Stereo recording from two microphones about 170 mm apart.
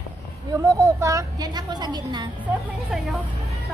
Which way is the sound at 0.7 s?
15° right (ahead or behind).